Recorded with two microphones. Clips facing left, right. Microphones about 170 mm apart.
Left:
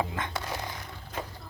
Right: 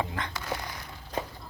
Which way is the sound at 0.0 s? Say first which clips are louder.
Left 1 dB; 20° left (ahead or behind).